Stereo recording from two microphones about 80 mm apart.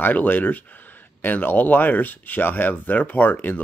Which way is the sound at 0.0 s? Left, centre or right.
Left.